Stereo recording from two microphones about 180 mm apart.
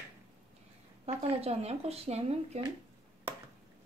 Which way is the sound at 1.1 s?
35° right (ahead or behind).